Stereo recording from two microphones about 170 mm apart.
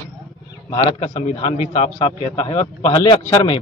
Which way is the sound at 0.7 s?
30° left (ahead or behind).